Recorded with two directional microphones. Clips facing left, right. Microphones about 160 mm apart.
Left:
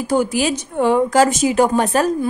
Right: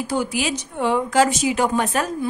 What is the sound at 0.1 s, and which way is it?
Speech, 45° left (ahead or behind).